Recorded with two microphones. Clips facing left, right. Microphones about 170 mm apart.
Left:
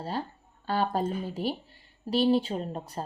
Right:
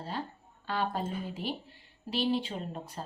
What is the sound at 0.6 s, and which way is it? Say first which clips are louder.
A woman's voice: left 5 dB; 35° left (ahead or behind).